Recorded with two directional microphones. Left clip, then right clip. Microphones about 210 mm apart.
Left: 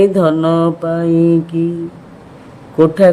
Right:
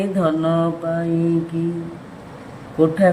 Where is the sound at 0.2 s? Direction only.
60° left (ahead or behind).